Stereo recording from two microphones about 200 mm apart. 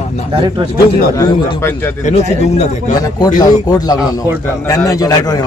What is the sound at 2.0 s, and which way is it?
Speech, 35° left (ahead or behind).